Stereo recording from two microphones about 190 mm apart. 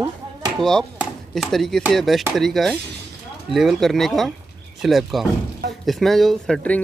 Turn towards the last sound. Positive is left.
turn(degrees=0)  # may be behind; listen again after turning